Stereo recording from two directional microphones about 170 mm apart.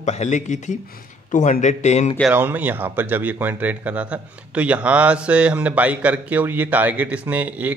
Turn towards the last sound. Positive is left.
turn(degrees=-10)  # may be behind; listen again after turning